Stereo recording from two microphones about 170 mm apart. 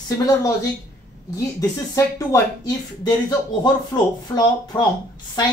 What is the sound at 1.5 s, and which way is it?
Speech, 20° left (ahead or behind).